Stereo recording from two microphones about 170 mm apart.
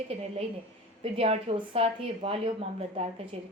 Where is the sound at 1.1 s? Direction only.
35° right (ahead or behind).